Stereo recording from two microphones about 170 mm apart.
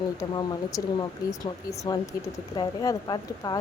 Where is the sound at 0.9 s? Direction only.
20° left (ahead or behind).